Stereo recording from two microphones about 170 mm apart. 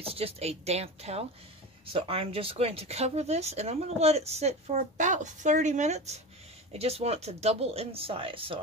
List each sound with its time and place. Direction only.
0.0 s speech: 35° right (ahead or behind)